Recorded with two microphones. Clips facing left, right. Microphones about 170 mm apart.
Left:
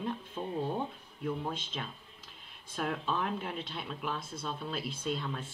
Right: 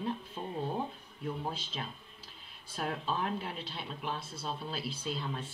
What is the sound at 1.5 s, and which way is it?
Speech, 35° right (ahead or behind).